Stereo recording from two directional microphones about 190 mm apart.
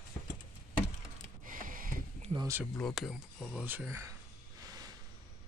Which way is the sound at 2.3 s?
20° right (ahead or behind).